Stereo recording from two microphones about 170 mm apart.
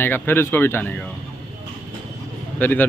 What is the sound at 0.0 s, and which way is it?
A man's voice, 10° left (ahead or behind).